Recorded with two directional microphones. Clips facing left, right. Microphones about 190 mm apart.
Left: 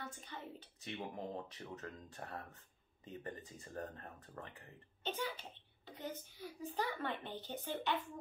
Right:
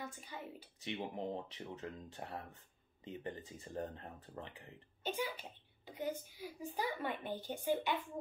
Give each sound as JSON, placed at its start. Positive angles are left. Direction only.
{"t": 0.0, "sound": "a child's voice", "side_deg": -10}
{"t": 0.8, "sound": "a child's voice", "side_deg": -20}